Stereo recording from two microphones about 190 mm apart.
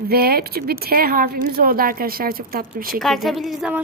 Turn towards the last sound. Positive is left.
turn(degrees=-5)  # may be behind; listen again after turning